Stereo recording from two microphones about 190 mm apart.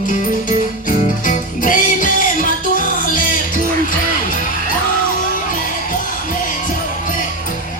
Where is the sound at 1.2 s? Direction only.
45° left (ahead or behind).